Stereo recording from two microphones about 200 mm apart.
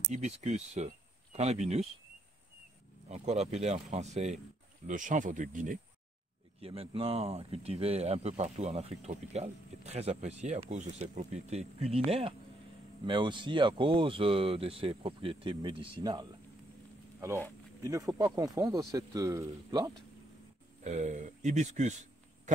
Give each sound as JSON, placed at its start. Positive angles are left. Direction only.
{"t": 0.1, "sound": "speech", "side_deg": -35}
{"t": 3.1, "sound": "speech", "side_deg": -35}
{"t": 6.6, "sound": "speech", "side_deg": -30}
{"t": 17.8, "sound": "speech", "side_deg": -15}
{"t": 20.8, "sound": "speech", "side_deg": -35}